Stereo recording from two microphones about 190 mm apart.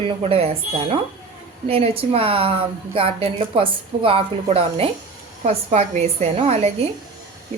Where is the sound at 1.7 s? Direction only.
30° right (ahead or behind).